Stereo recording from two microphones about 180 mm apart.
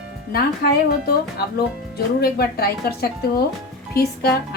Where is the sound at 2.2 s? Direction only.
60° left (ahead or behind).